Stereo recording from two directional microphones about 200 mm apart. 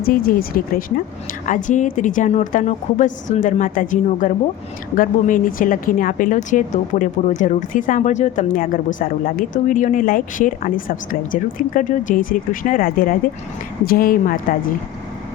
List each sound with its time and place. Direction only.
0.0 s a woman's voice: 45° left (ahead or behind)